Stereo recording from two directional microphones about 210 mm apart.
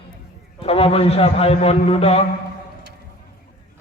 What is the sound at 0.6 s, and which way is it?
A man's voice, 25° left (ahead or behind).